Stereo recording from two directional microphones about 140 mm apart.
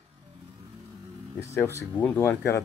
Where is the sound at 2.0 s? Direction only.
15° left (ahead or behind).